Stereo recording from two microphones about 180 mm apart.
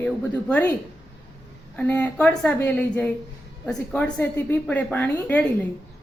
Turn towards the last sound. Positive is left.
turn(degrees=10)  # may be behind; listen again after turning